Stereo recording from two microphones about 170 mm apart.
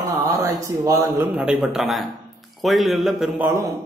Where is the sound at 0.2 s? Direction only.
20° right (ahead or behind); by 3.4 s centre (ahead or behind).